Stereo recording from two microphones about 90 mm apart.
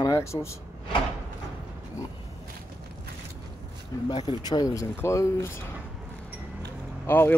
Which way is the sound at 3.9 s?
45° left (ahead or behind).